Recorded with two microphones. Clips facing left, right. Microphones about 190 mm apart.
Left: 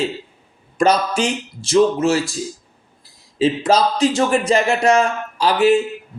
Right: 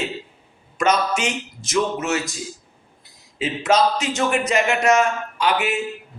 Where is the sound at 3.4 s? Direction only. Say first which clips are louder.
Left 3 dB; 35° left (ahead or behind).